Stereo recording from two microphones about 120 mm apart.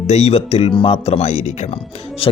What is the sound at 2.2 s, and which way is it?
Speech, 50° left (ahead or behind).